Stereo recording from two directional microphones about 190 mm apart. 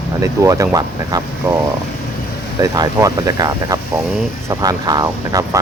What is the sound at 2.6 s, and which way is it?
Speech, 15° right (ahead or behind).